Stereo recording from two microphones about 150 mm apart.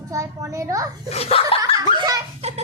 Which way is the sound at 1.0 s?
45° left (ahead or behind).